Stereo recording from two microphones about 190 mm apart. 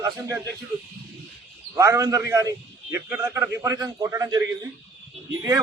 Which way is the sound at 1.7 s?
15° right (ahead or behind).